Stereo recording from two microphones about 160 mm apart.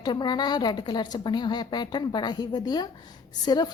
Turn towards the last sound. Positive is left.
turn(degrees=25)  # may be behind; listen again after turning